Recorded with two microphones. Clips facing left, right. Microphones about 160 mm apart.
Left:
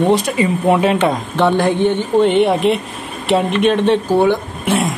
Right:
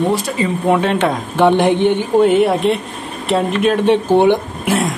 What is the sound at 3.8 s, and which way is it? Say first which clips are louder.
Speech: right 2 dB; 20° right (ahead or behind).